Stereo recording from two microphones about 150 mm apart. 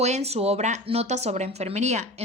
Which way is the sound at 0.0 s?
45° right (ahead or behind).